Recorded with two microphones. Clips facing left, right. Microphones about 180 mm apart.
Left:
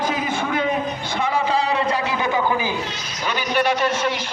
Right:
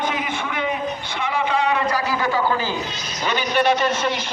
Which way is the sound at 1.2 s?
35° left (ahead or behind).